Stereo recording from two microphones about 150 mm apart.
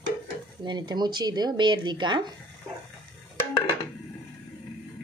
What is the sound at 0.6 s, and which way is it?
Speech, 30° right (ahead or behind).